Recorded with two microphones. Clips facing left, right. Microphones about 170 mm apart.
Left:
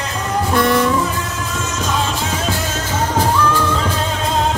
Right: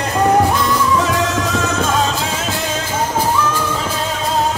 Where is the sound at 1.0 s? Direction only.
90° right; by 1.9 s 60° right (ahead or behind).